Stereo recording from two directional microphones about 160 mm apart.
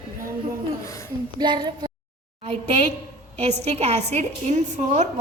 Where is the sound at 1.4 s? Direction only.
25° right (ahead or behind).